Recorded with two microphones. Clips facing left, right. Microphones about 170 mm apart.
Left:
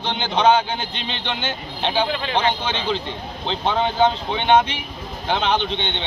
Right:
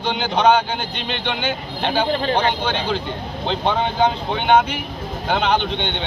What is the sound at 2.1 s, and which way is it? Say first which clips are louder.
Speech: right 3 dB; 40° right (ahead or behind).